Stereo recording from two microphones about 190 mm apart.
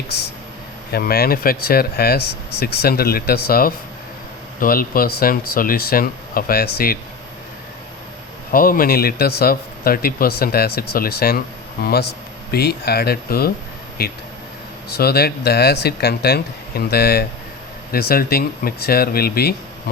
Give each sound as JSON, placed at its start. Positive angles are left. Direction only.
{"t": 0.9, "sound": "speech", "side_deg": 55}
{"t": 8.5, "sound": "speech", "side_deg": 50}